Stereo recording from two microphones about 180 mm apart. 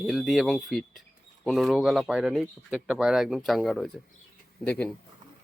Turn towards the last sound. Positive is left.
turn(degrees=5)  # may be behind; listen again after turning